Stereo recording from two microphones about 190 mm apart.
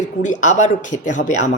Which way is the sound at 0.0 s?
40° left (ahead or behind).